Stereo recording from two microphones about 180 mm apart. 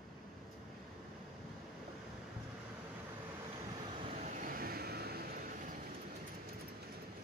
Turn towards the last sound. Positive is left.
turn(degrees=-60)  # may be behind; listen again after turning